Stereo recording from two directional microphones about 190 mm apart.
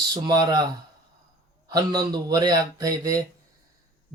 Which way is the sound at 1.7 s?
20° right (ahead or behind).